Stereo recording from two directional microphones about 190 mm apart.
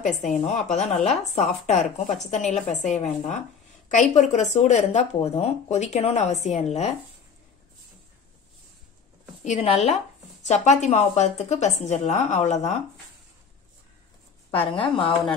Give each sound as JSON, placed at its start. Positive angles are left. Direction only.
{"t": 0.7, "sound": "speech", "side_deg": 35}
{"t": 9.4, "sound": "speech", "side_deg": 35}
{"t": 14.5, "sound": "speech", "side_deg": 30}